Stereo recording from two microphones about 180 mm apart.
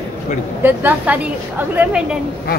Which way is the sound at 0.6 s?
10° right (ahead or behind).